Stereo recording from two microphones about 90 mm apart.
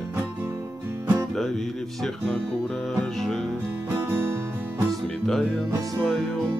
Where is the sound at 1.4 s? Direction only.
5° left (ahead or behind).